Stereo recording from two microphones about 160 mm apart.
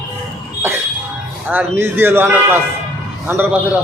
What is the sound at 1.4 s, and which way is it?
A man's voice, 15° right (ahead or behind).